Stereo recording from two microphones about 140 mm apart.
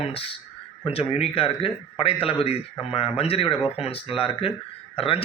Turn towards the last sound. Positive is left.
turn(degrees=40)  # may be behind; listen again after turning